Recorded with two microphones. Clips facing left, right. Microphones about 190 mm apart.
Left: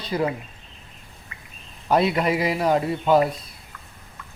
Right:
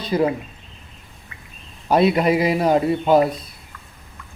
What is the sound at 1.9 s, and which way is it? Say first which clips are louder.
Speech: right 4 dB; 20° right (ahead or behind).